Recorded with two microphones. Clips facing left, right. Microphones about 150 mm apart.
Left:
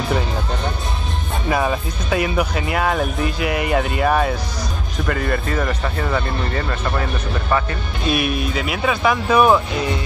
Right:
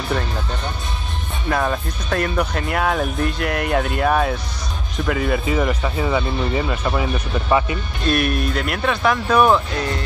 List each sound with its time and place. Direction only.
1.5 s speech: 5° left (ahead or behind)
8.0 s speech: 5° left (ahead or behind)